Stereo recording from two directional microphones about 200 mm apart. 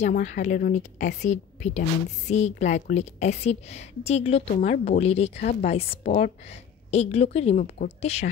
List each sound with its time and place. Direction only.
0.0 s a woman's voice: 35° left (ahead or behind)